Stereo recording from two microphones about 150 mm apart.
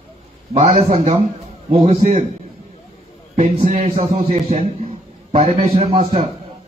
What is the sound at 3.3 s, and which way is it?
A man's voice, 45° right (ahead or behind).